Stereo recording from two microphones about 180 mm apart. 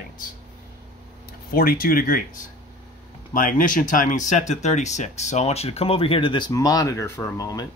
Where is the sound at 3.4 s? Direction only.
50° left (ahead or behind).